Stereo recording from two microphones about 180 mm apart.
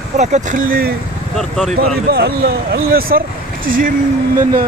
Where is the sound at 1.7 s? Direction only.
60° right (ahead or behind).